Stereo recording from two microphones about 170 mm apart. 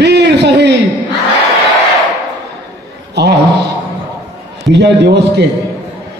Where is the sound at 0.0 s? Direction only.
90° right.